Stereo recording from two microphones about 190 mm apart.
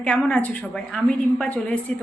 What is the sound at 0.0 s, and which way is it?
A woman's voice, 5° left (ahead or behind).